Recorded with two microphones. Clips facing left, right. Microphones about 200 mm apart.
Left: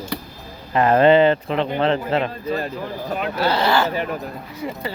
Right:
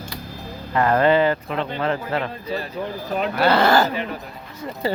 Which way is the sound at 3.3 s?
60° right (ahead or behind).